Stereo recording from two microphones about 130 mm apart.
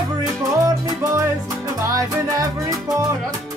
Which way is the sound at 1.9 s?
25° right (ahead or behind).